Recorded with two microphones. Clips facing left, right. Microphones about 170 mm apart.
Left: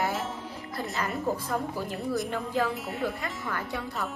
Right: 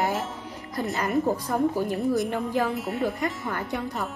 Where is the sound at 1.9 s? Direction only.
Centre (ahead or behind).